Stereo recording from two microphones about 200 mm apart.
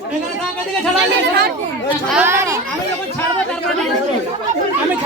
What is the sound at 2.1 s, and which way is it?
Speech, 10° right (ahead or behind).